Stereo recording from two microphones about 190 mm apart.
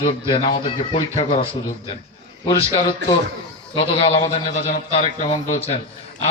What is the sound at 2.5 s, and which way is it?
A man's voice, 35° left (ahead or behind).